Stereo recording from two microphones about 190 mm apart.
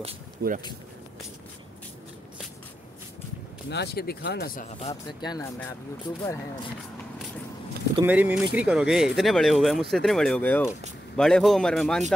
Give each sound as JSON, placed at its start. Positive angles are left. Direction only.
{"t": 0.4, "sound": "speech", "side_deg": -55}
{"t": 3.7, "sound": "speech", "side_deg": 55}
{"t": 4.6, "sound": "speech", "side_deg": 35}
{"t": 5.2, "sound": "speech", "side_deg": 20}
{"t": 8.0, "sound": "speech", "side_deg": -10}